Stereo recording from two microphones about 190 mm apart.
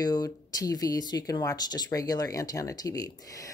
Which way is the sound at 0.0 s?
20° left (ahead or behind).